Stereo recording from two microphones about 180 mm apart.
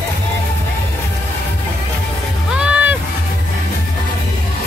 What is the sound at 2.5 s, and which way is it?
Music, 5° right (ahead or behind).